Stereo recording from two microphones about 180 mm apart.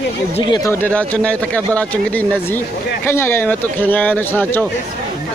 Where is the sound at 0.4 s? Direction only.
25° left (ahead or behind).